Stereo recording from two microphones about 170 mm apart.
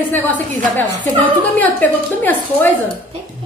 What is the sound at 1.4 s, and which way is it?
A woman's voice, 10° left (ahead or behind).